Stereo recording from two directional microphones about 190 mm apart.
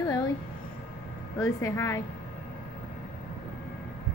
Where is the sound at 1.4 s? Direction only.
15° left (ahead or behind).